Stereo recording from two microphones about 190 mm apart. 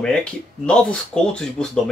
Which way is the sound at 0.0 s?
5° left (ahead or behind).